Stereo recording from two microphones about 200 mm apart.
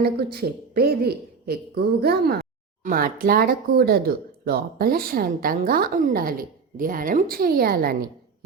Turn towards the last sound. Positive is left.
turn(degrees=-50)  # may be behind; listen again after turning